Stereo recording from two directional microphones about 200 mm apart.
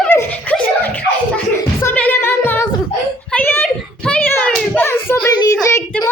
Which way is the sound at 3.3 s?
10° left (ahead or behind).